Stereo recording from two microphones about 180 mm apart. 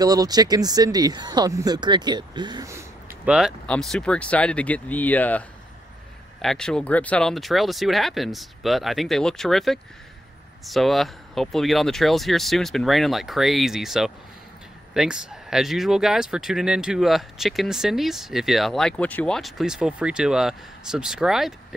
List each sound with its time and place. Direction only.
0.0 s speech: 20° right (ahead or behind)
3.3 s speech: centre (ahead or behind)
6.4 s speech: 5° left (ahead or behind)